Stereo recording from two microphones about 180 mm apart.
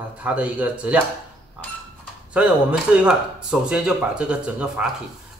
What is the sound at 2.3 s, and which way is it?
Speech, 5° right (ahead or behind).